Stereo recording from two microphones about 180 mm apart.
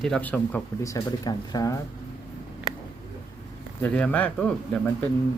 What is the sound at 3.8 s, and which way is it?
Speech, 5° left (ahead or behind).